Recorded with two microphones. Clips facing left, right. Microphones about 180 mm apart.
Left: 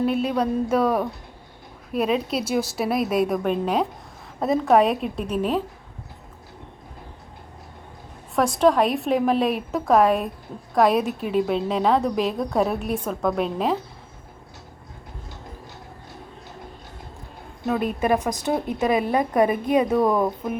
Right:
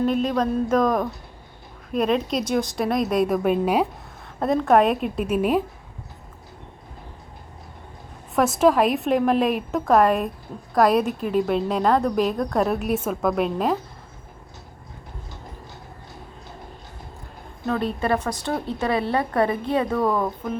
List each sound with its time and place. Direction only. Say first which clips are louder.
0.0 s a woman's voice: right 1 dB; 10° left (ahead or behind); by 5.6 s 10° right (ahead or behind)
8.5 s a woman's voice: even; 5° right (ahead or behind)
18.0 s a woman's voice: left 2 dB; 15° left (ahead or behind)